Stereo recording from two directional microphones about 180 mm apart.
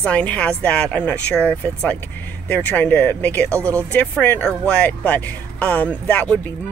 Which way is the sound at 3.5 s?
15° right (ahead or behind).